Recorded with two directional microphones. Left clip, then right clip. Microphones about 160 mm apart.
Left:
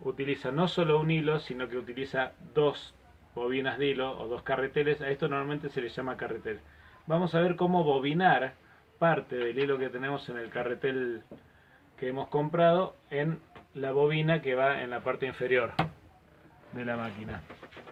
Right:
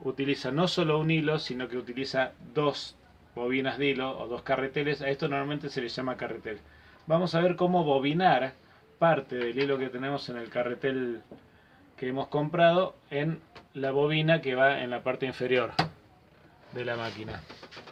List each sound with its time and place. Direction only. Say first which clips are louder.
0.2 s speech: right 3 dB; 40° right (ahead or behind)
15.0 s speech: right 1 dB; 55° right (ahead or behind)
16.7 s a man's voice: right 2 dB; 90° right